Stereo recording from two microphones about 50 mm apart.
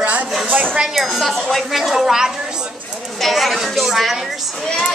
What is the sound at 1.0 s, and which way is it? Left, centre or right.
A woman's voice, centre.